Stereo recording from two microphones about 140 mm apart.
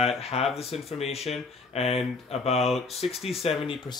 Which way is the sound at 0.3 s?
45° left (ahead or behind).